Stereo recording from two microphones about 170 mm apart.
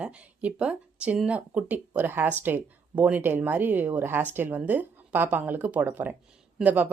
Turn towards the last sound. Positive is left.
turn(degrees=-10)  # may be behind; listen again after turning